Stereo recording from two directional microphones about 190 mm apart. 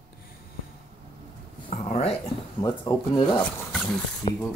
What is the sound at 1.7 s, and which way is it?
Speech, 35° left (ahead or behind).